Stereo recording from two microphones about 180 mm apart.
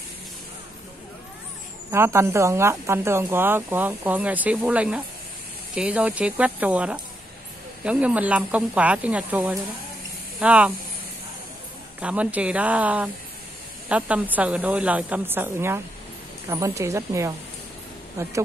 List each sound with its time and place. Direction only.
1.9 s speech: 15° right (ahead or behind)
12.0 s speech: 5° right (ahead or behind)